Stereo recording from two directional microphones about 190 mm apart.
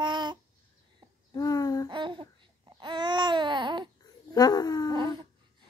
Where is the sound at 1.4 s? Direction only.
20° left (ahead or behind).